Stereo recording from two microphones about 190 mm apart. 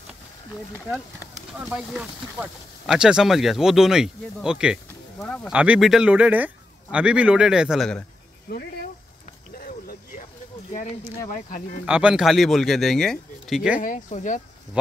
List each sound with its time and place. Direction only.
1.6 s speech: 5° right (ahead or behind)
9.6 s a sound: 50° left (ahead or behind)
11.8 s speech: 5° right (ahead or behind)
13.7 s speech: 40° left (ahead or behind)